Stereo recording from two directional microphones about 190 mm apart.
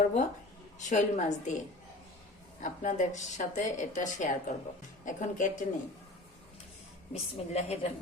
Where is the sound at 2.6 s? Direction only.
40° left (ahead or behind).